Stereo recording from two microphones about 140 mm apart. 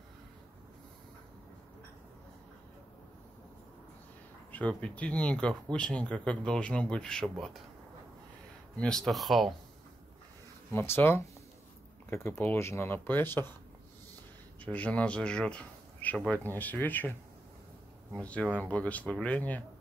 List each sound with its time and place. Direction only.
4.5 s speech: 10° left (ahead or behind)
8.7 s speech: 5° left (ahead or behind)
10.7 s speech: 15° left (ahead or behind)
14.6 s speech: 10° left (ahead or behind)
18.2 s speech: 10° left (ahead or behind)